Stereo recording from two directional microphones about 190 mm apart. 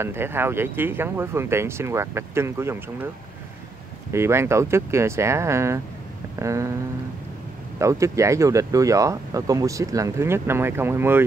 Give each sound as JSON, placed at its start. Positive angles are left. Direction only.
{"t": 0.0, "sound": "speech", "side_deg": -10}
{"t": 4.1, "sound": "speech", "side_deg": -15}
{"t": 7.8, "sound": "speech", "side_deg": -15}